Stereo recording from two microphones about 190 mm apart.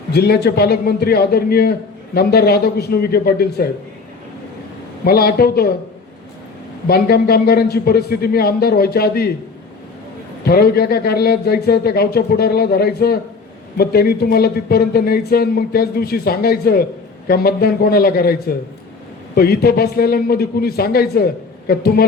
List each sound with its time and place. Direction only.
0.1 s a man's voice: 60° left (ahead or behind)
5.0 s a man's voice: 55° left (ahead or behind)
6.8 s a man's voice: 55° left (ahead or behind)
10.4 s a man's voice: 55° left (ahead or behind)